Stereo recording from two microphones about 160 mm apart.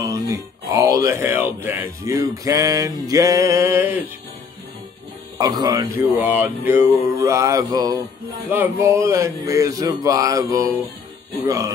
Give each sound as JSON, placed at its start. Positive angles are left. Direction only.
{"t": 0.0, "sound": "speech", "side_deg": -20}
{"t": 5.4, "sound": "speech", "side_deg": -25}
{"t": 6.4, "sound": "a sound", "side_deg": -10}
{"t": 7.2, "sound": "speech", "side_deg": -20}